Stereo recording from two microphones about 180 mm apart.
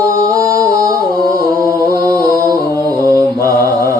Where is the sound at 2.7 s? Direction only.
15° left (ahead or behind).